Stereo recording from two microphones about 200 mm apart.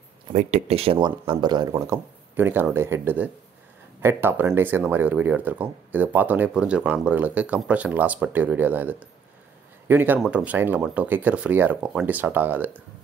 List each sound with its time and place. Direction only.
0.3 s speech: 35° right (ahead or behind); by 12.8 s 10° right (ahead or behind)